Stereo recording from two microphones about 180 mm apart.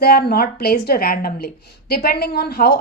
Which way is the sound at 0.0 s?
60° left (ahead or behind).